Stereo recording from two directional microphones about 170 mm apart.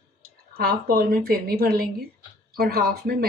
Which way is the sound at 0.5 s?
60° right (ahead or behind).